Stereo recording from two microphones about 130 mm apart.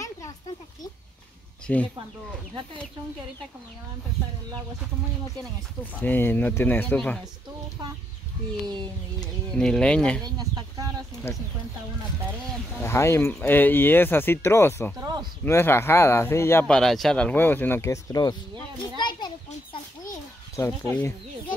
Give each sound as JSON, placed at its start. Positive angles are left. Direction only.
{"t": 1.7, "sound": "speech", "side_deg": 10}
{"t": 6.0, "sound": "speech", "side_deg": 15}
{"t": 9.5, "sound": "speech", "side_deg": 5}
{"t": 10.2, "sound": "speech", "side_deg": -30}
{"t": 11.3, "sound": "speech", "side_deg": 20}
{"t": 12.8, "sound": "speech", "side_deg": 20}
{"t": 15.0, "sound": "speech", "side_deg": -30}
{"t": 15.4, "sound": "speech", "side_deg": 20}
{"t": 16.6, "sound": "speech", "side_deg": 5}
{"t": 18.9, "sound": "children playing", "side_deg": 35}
{"t": 20.9, "sound": "speech", "side_deg": 10}